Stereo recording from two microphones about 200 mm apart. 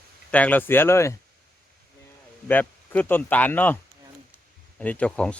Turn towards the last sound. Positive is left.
turn(degrees=5)  # may be behind; listen again after turning